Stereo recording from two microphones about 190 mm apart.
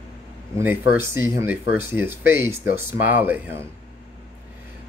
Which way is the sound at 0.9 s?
15° right (ahead or behind).